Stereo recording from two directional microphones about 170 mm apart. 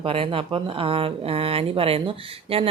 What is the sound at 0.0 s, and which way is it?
Speech, 35° right (ahead or behind).